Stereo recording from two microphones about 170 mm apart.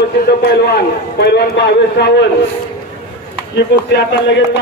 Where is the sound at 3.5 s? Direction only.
90° left.